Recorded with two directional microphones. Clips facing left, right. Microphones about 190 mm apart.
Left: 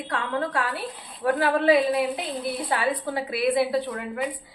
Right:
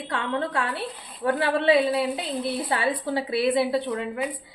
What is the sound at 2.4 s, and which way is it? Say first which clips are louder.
A woman's voice: even; 25° right (ahead or behind).